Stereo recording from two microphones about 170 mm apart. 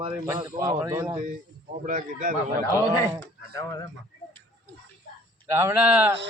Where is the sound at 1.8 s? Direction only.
50° right (ahead or behind).